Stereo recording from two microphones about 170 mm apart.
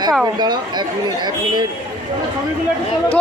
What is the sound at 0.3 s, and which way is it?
Speech, 25° right (ahead or behind).